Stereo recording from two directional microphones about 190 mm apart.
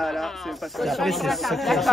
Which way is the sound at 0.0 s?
Centre (ahead or behind).